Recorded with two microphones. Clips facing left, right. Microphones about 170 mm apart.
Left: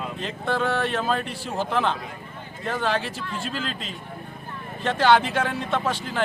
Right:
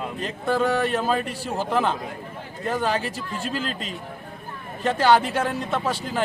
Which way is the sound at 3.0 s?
40° right (ahead or behind).